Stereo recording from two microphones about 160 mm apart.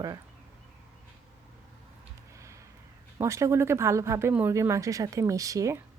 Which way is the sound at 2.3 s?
20° right (ahead or behind).